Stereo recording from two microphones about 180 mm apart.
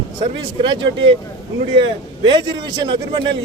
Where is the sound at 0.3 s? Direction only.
25° right (ahead or behind).